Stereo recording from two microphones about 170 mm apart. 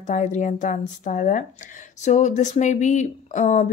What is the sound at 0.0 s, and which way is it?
Speech, 45° left (ahead or behind).